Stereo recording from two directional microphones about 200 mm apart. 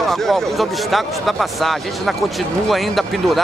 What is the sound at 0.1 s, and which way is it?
Speech, centre (ahead or behind).